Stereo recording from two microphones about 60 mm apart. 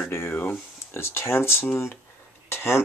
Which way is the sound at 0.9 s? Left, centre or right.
Left.